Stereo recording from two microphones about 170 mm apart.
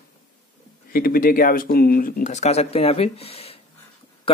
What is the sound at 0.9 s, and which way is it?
Speech, 60° left (ahead or behind).